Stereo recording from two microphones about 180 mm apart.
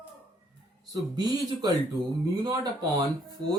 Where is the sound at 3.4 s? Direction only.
25° right (ahead or behind).